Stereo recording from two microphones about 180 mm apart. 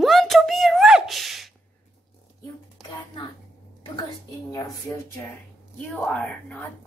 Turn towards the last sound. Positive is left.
turn(degrees=5)  # may be behind; listen again after turning